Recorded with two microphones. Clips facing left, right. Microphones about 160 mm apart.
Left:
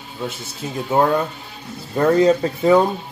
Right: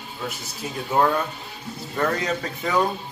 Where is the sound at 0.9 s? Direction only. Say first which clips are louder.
Left 4 dB; 25° left (ahead or behind).